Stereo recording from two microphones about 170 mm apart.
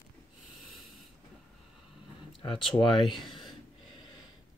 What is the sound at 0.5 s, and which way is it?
Wheeze, centre (ahead or behind).